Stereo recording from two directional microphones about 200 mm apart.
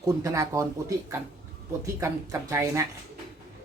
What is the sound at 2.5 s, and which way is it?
Speech, 15° right (ahead or behind).